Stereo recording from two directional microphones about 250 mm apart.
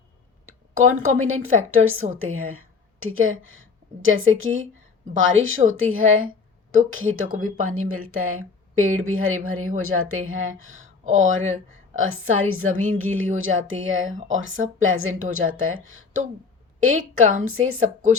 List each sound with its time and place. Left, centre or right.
0.4 s a sound: right
1.2 s a woman's voice: right
14.1 s speech: right
14.3 s speech: right